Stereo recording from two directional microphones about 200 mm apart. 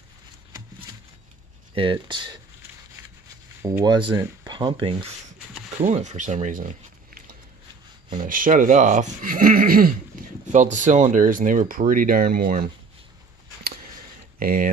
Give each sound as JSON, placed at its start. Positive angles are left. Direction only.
{"t": 1.8, "sound": "speech", "side_deg": -25}
{"t": 3.6, "sound": "speech", "side_deg": -20}
{"t": 5.9, "sound": "speech", "side_deg": -35}
{"t": 8.2, "sound": "speech", "side_deg": -45}
{"t": 14.4, "sound": "speech", "side_deg": -45}